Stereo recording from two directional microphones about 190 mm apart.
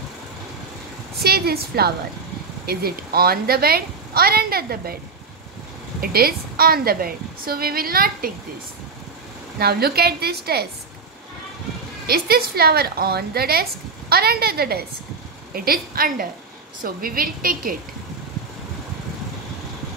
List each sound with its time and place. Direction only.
1.2 s a woman's voice: 55° right (ahead or behind)
5.9 s a child's voice: 50° right (ahead or behind)
9.6 s a woman's voice: 55° right (ahead or behind)
12.1 s a woman's voice: 55° right (ahead or behind)